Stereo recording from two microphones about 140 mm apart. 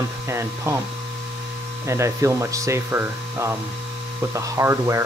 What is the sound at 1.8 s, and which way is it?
Speech, 20° right (ahead or behind).